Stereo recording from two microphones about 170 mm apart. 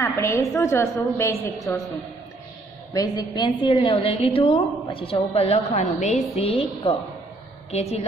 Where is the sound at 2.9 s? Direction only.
20° left (ahead or behind); by 8.0 s 40° left (ahead or behind).